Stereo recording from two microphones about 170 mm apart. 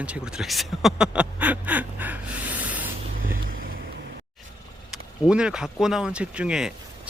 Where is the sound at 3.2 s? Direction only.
55° right (ahead or behind).